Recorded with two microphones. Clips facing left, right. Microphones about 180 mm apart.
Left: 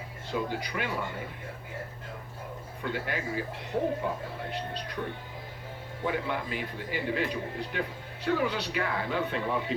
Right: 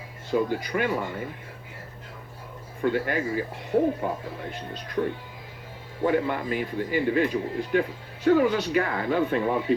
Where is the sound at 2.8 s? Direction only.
50° right (ahead or behind).